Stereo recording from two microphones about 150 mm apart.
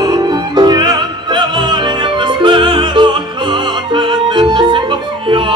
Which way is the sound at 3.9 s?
30° right (ahead or behind).